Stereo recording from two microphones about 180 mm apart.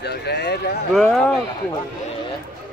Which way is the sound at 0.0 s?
65° left (ahead or behind).